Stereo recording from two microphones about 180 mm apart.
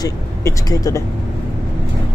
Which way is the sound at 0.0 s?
20° left (ahead or behind).